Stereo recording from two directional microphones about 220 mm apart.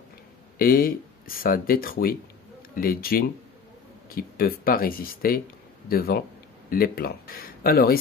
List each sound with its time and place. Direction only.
0.6 s speech: 40° left (ahead or behind)